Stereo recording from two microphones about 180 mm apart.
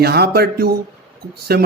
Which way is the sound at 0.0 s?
60° right (ahead or behind).